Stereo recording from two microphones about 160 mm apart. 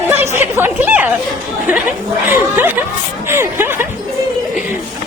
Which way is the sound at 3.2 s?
15° right (ahead or behind).